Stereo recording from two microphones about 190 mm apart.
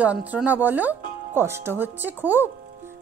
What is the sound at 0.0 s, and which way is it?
Speech, 10° right (ahead or behind).